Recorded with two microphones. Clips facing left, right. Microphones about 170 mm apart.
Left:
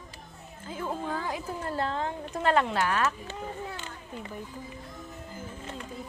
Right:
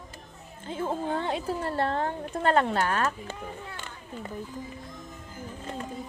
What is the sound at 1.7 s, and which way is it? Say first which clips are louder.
Speech: right 2 dB; 60° right (ahead or behind).